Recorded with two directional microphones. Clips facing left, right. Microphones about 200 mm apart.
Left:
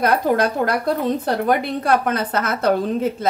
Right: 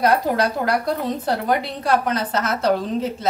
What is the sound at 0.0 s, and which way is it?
Speech, 55° left (ahead or behind).